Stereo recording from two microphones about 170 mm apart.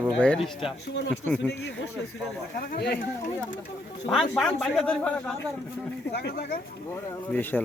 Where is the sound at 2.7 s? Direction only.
65° left (ahead or behind).